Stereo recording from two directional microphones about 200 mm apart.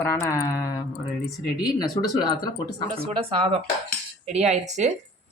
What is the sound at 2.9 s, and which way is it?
Speech, 30° right (ahead or behind).